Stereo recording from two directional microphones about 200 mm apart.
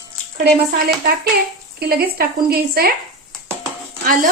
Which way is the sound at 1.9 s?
50° right (ahead or behind).